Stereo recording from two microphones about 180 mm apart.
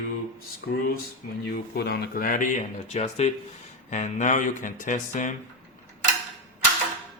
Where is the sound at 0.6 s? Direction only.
55° left (ahead or behind).